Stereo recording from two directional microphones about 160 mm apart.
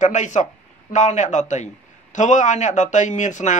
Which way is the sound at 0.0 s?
50° left (ahead or behind).